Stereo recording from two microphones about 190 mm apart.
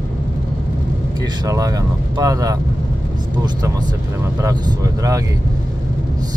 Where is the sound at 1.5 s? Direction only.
20° right (ahead or behind).